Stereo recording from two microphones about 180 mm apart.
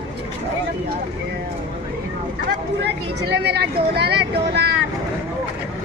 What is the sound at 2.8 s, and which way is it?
Speech, 70° right (ahead or behind).